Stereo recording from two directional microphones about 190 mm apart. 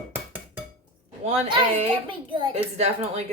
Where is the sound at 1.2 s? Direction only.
30° right (ahead or behind).